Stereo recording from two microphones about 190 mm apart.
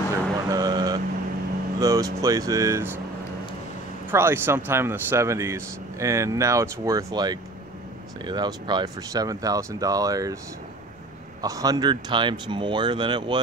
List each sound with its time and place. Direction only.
0.1 s vehicle: 20° right (ahead or behind)
1.8 s speech: 15° right (ahead or behind)
4.1 s speech: 10° right (ahead or behind)
11.4 s speech: 20° right (ahead or behind)